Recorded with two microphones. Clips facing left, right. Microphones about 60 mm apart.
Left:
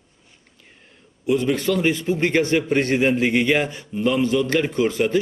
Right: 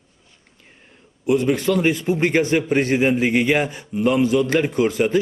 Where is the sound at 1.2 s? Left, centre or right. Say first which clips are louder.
Right 2 dB; right.